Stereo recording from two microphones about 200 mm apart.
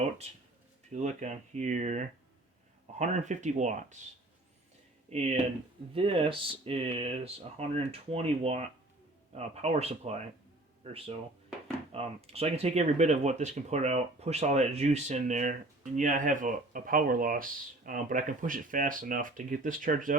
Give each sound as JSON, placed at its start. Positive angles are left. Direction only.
{"t": 0.9, "sound": "speech", "side_deg": -35}
{"t": 5.0, "sound": "speech", "side_deg": -30}